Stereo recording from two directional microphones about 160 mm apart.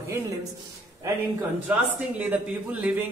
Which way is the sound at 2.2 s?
10° right (ahead or behind).